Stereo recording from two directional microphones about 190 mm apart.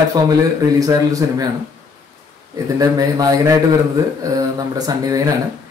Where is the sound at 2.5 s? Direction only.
20° right (ahead or behind).